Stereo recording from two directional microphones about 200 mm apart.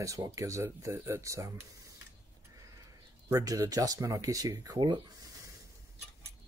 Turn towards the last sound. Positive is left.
turn(degrees=-20)  # may be behind; listen again after turning